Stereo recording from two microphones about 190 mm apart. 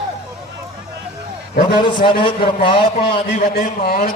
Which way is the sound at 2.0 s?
25° left (ahead or behind).